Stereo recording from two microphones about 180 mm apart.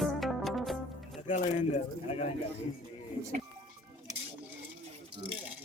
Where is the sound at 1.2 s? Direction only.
45° left (ahead or behind).